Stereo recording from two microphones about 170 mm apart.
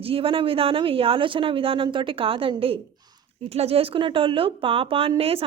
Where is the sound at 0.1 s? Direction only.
30° right (ahead or behind).